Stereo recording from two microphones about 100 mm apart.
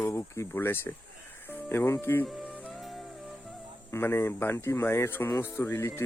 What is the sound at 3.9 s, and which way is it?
Speech, 25° left (ahead or behind).